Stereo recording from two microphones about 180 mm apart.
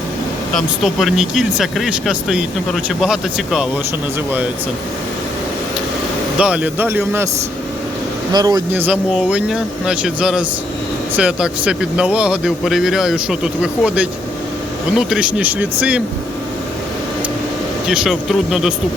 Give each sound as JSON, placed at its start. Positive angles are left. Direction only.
{"t": 0.5, "sound": "speech", "side_deg": 0}
{"t": 6.4, "sound": "speech", "side_deg": -5}
{"t": 8.3, "sound": "speech", "side_deg": -20}
{"t": 8.7, "sound": "speech", "side_deg": -10}
{"t": 17.8, "sound": "speech", "side_deg": -5}